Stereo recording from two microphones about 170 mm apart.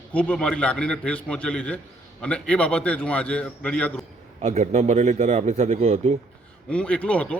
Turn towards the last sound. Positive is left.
turn(degrees=5)  # may be behind; listen again after turning